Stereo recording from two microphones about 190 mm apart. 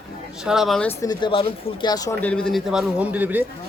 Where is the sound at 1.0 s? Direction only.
25° left (ahead or behind).